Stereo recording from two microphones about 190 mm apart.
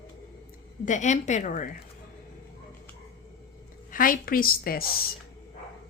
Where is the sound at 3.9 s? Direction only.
45° left (ahead or behind).